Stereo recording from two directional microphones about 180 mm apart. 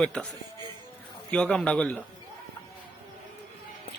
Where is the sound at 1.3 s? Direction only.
5° left (ahead or behind).